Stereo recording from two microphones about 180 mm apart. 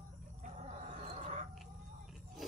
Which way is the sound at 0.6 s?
40° right (ahead or behind).